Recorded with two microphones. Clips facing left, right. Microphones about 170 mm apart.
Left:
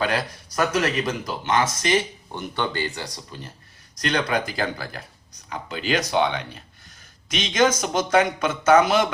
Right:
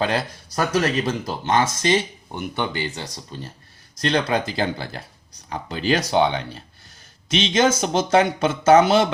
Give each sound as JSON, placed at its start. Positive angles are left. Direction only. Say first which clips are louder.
{"t": 0.0, "sound": "speech", "louder": "right 2 dB", "side_deg": -30}
{"t": 2.3, "sound": "speech", "louder": "right 1 dB", "side_deg": -10}